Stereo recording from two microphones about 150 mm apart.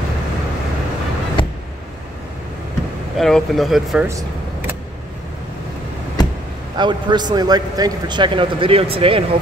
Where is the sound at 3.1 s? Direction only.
Centre (ahead or behind).